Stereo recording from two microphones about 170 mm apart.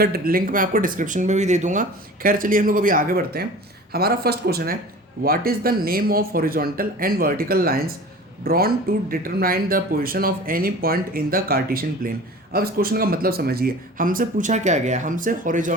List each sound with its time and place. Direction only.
0.0 s speech: 60° right (ahead or behind)